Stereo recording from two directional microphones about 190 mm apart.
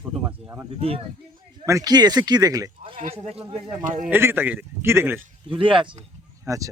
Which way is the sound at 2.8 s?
30° right (ahead or behind).